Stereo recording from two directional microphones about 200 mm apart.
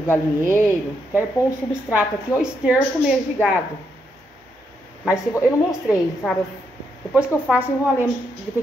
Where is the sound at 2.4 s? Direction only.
5° right (ahead or behind).